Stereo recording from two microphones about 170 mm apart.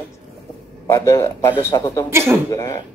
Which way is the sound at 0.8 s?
15° left (ahead or behind).